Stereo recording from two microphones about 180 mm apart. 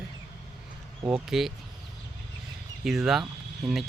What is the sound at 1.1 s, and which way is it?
Speech, centre (ahead or behind).